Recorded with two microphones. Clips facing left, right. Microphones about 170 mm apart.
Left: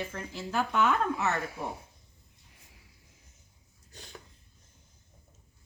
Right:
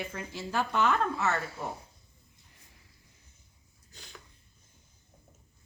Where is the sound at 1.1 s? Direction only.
15° left (ahead or behind).